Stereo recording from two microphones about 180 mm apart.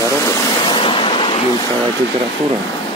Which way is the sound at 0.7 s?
30° left (ahead or behind).